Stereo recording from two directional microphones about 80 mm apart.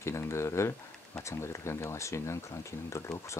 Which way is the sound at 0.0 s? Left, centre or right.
Left.